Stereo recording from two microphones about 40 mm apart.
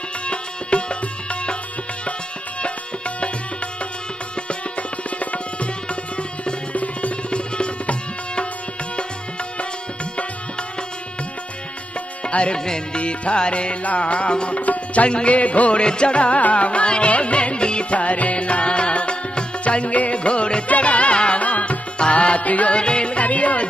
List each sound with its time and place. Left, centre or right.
0.3 s music: left
5.2 s tabla: left
6.7 s music: left
7.2 s music: left
12.3 s music: left
14.6 s tabla: left
15.0 s music: left
22.8 s music: left